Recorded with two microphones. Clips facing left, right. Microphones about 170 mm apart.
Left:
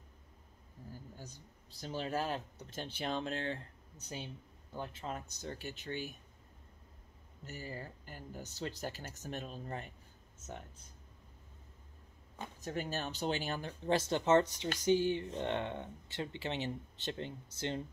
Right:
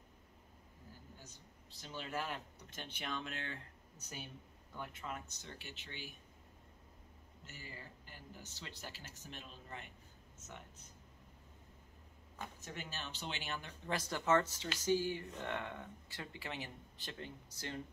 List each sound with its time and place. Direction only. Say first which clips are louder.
1.8 s speech: left 6 dB; 40° left (ahead or behind)
4.7 s speech: left 4 dB; 30° left (ahead or behind); by 6.1 s 45° left (ahead or behind)
7.4 s speech: left 9 dB; 40° left (ahead or behind)
12.7 s speech: left 11 dB; 45° left (ahead or behind); by 17.8 s 25° left (ahead or behind)